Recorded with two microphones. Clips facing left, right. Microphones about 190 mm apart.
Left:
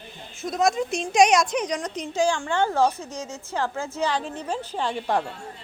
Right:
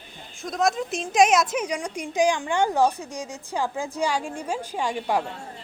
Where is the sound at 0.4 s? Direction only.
Centre (ahead or behind).